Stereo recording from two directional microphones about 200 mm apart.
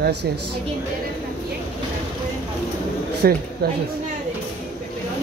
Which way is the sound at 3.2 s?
50° right (ahead or behind).